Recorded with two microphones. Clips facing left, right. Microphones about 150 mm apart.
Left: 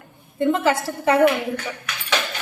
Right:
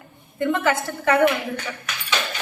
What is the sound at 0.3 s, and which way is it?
Speech, 30° left (ahead or behind).